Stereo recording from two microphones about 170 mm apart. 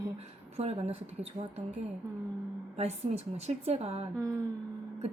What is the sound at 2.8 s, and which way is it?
A woman's voice, 35° right (ahead or behind).